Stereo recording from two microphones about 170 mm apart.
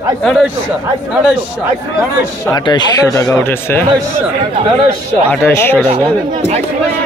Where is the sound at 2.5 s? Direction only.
20° left (ahead or behind).